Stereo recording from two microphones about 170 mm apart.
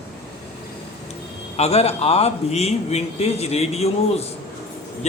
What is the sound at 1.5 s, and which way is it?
A man's voice, 40° left (ahead or behind).